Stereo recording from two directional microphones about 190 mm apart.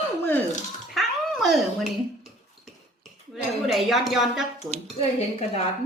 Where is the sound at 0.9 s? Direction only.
Centre (ahead or behind).